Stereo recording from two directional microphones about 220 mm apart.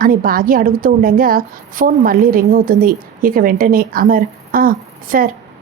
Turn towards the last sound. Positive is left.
turn(degrees=-40)  # may be behind; listen again after turning